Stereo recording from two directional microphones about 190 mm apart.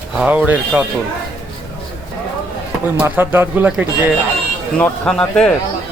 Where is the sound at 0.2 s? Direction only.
10° right (ahead or behind).